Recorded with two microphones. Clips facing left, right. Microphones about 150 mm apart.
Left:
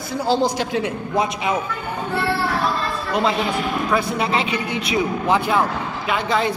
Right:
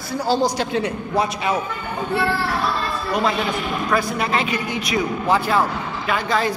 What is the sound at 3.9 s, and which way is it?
Speech, 25° left (ahead or behind).